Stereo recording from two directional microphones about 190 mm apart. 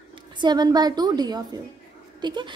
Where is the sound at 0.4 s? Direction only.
20° right (ahead or behind).